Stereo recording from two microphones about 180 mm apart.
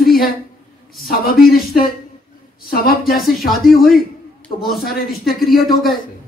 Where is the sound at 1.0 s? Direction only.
55° left (ahead or behind).